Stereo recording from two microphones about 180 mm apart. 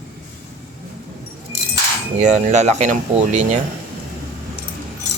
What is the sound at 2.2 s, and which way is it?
Speech, 40° right (ahead or behind).